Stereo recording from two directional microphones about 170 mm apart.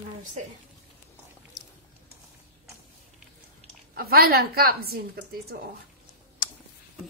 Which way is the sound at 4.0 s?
65° right (ahead or behind).